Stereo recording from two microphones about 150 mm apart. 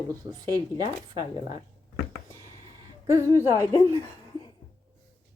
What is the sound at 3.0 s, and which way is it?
Speech, 20° right (ahead or behind).